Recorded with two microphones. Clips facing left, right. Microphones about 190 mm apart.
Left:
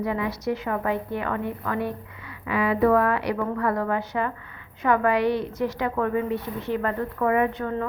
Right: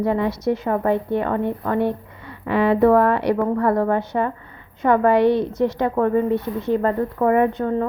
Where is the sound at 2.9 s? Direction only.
35° right (ahead or behind).